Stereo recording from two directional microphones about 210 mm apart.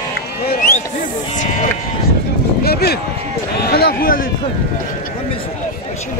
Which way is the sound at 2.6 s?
50° left (ahead or behind).